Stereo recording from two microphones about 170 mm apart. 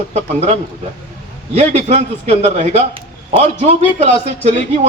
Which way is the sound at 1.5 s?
40° right (ahead or behind).